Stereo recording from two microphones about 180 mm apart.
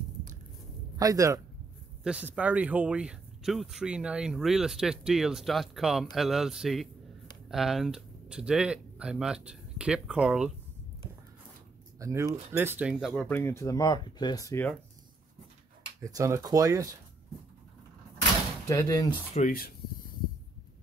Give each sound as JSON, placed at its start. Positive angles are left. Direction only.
{"t": 0.9, "sound": "speech", "side_deg": -20}
{"t": 2.0, "sound": "speech", "side_deg": -5}
{"t": 12.0, "sound": "speech", "side_deg": -15}
{"t": 16.0, "sound": "speech", "side_deg": -20}
{"t": 18.7, "sound": "speech", "side_deg": 20}
{"t": 19.3, "sound": "speech", "side_deg": 50}